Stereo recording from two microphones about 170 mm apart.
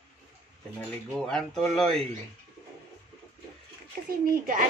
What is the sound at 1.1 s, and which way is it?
Speech, 5° left (ahead or behind).